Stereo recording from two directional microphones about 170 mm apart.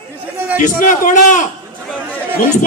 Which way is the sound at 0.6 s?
50° left (ahead or behind).